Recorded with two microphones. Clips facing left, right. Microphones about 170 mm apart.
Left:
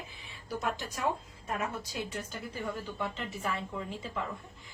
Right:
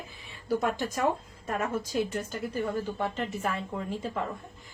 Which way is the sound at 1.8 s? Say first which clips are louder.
Right 8 dB; 45° right (ahead or behind).